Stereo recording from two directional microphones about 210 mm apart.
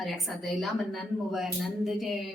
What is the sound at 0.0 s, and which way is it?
A woman's voice, centre (ahead or behind).